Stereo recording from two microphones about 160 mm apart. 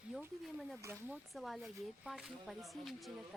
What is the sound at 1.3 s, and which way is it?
Speech, centre (ahead or behind).